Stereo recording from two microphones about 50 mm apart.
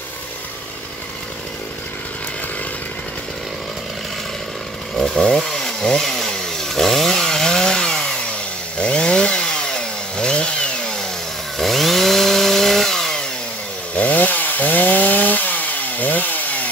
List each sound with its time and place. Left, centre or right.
4.9 s chainsaw: centre
11.5 s chainsaw: centre
13.9 s chainsaw: left